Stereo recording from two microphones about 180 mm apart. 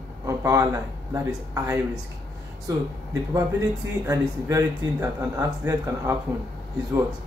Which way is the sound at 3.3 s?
20° right (ahead or behind).